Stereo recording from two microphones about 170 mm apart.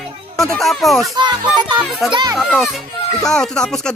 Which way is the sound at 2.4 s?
Centre (ahead or behind).